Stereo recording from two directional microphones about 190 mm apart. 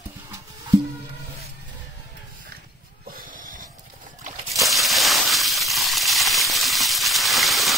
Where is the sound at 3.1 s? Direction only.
45° right (ahead or behind).